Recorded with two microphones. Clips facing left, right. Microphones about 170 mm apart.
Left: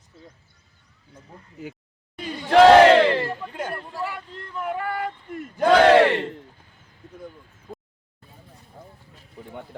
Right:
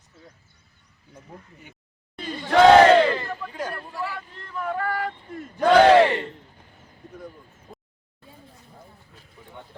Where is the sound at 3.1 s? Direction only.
25° left (ahead or behind).